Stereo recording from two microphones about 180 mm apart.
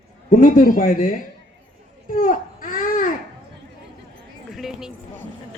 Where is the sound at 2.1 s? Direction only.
50° left (ahead or behind).